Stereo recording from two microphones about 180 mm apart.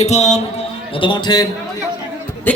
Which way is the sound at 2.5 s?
10° left (ahead or behind).